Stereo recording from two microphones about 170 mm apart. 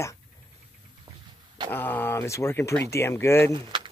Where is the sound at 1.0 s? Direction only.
25° right (ahead or behind).